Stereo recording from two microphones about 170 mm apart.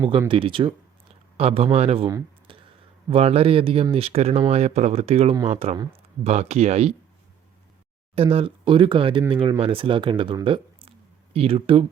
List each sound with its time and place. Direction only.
0.3 s speech: 30° right (ahead or behind)
2.5 s a sound: 30° right (ahead or behind)
3.1 s speech: 35° right (ahead or behind)
8.1 s speech: 35° right (ahead or behind)
10.4 s a sound: 30° right (ahead or behind)
11.3 s speech: 35° right (ahead or behind)